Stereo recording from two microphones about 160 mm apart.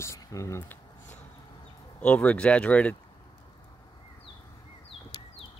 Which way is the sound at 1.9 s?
10° left (ahead or behind).